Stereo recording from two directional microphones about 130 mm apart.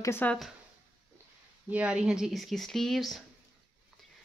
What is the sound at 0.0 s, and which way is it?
Speech, 15° left (ahead or behind).